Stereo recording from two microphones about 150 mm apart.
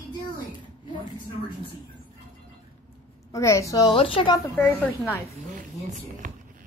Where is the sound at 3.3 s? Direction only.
20° left (ahead or behind).